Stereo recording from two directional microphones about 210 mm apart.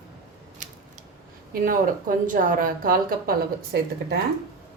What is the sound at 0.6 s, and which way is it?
Scissors, 35° right (ahead or behind).